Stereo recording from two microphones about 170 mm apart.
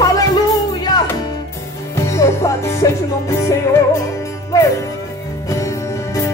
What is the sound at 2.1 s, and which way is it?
Music, 20° left (ahead or behind).